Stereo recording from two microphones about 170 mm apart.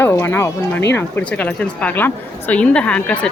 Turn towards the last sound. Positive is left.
turn(degrees=5)  # may be behind; listen again after turning